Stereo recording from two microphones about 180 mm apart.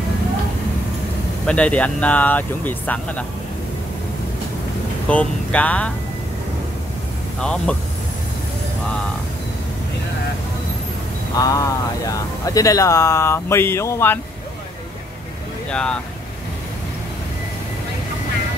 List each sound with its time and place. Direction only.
1.4 s speech: 5° left (ahead or behind)
5.1 s speech: 5° left (ahead or behind)
7.3 s speech: 5° left (ahead or behind)
11.3 s speech: 20° left (ahead or behind)
15.7 s speech: 5° left (ahead or behind)